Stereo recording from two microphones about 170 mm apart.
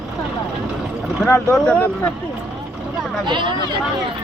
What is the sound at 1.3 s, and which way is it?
Speech, 15° left (ahead or behind).